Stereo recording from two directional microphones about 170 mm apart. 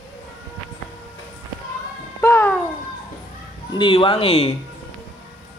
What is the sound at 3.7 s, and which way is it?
Speech, 30° left (ahead or behind).